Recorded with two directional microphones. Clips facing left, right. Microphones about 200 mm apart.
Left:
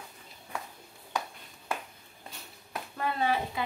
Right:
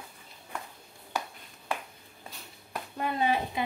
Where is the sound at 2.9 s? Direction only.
20° right (ahead or behind).